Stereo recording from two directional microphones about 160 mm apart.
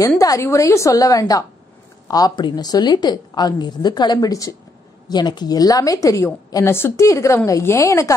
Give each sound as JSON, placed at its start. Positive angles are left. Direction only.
{"t": 0.2, "sound": "a woman's voice", "side_deg": 20}